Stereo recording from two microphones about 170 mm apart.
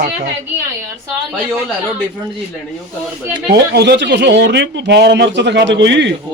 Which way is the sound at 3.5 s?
75° right (ahead or behind).